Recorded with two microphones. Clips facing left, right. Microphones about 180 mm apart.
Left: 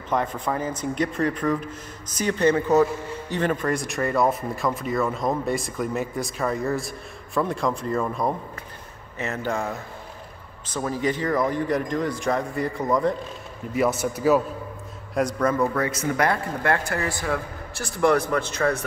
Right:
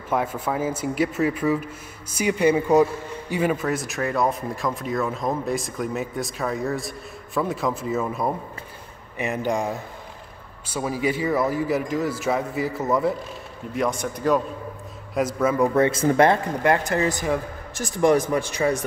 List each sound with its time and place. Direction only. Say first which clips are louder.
0.1 s speech: right 1 dB; 5° right (ahead or behind)
9.2 s speech: right 3 dB; 15° right (ahead or behind)
13.7 s speech: left 2 dB; 5° left (ahead or behind); by 15.7 s 10° right (ahead or behind)
15.7 s speech: right 6 dB; 25° right (ahead or behind)